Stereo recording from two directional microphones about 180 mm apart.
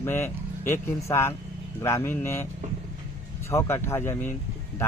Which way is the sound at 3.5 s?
15° left (ahead or behind).